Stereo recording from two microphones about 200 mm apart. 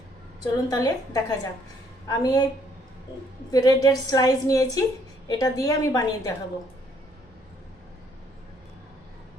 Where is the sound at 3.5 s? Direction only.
20° left (ahead or behind).